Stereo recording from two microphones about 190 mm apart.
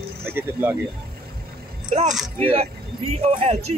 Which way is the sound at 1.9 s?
40° right (ahead or behind).